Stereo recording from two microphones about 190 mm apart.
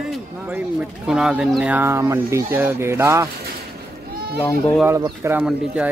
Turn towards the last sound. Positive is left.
turn(degrees=-5)  # may be behind; listen again after turning